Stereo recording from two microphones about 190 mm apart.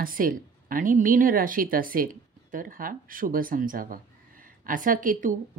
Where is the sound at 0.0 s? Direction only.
45° right (ahead or behind).